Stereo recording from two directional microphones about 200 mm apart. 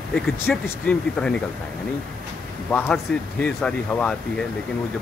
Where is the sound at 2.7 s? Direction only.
5° left (ahead or behind).